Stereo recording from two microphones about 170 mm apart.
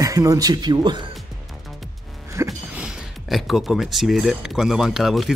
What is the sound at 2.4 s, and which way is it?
Speech, 5° right (ahead or behind).